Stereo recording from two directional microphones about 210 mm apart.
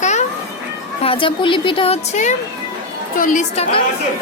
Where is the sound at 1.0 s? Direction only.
25° left (ahead or behind).